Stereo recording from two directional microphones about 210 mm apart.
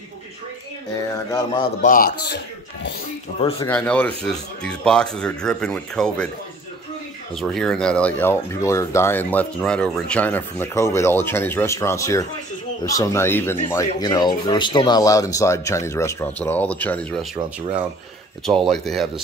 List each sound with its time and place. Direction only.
1.8 s a man's voice: 40° left (ahead or behind)
3.3 s speech: 25° left (ahead or behind)
3.6 s speech: 5° left (ahead or behind)
7.3 s speech: centre (ahead or behind)
18.4 s speech: centre (ahead or behind)